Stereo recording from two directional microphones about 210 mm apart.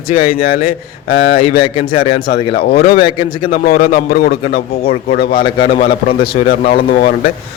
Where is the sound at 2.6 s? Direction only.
45° left (ahead or behind).